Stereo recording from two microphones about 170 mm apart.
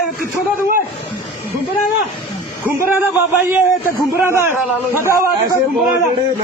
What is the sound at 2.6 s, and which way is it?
A man's voice, 15° right (ahead or behind).